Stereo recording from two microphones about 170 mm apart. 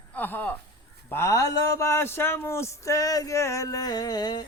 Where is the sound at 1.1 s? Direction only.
20° left (ahead or behind).